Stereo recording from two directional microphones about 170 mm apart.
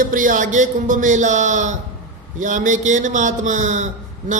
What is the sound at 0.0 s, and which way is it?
Speech, 50° right (ahead or behind).